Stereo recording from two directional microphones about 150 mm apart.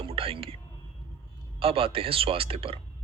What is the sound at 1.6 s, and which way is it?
Speech, 40° right (ahead or behind).